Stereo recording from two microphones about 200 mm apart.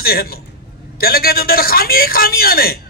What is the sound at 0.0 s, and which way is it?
A man's voice, 50° left (ahead or behind).